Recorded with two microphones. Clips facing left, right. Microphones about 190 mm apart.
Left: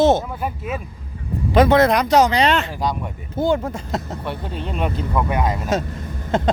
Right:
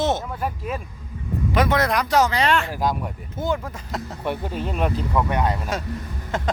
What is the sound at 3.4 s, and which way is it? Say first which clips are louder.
Speech: left 6 dB; 30° left (ahead or behind).